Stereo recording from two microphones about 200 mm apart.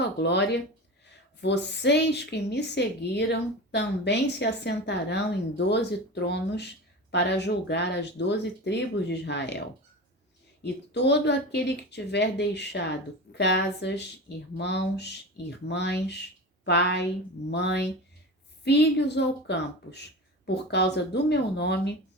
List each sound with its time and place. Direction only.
0.0 s a woman's voice: 60° left (ahead or behind)
10.6 s a woman's voice: 55° left (ahead or behind)